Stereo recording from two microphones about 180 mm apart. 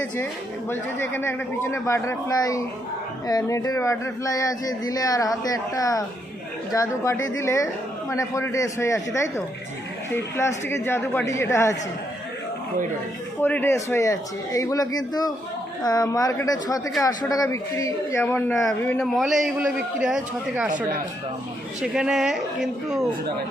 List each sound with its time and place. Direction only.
0.7 s speech: 10° left (ahead or behind)
13.4 s a woman's voice: 10° left (ahead or behind)
21.8 s a woman's voice: 5° right (ahead or behind)